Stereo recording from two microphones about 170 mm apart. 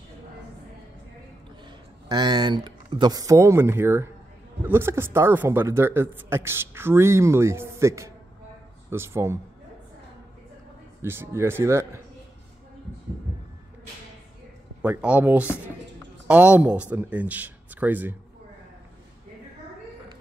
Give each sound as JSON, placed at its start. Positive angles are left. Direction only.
{"t": 2.0, "sound": "a man's voice", "side_deg": -25}
{"t": 11.0, "sound": "a man's voice", "side_deg": -15}
{"t": 14.8, "sound": "a man's voice", "side_deg": -5}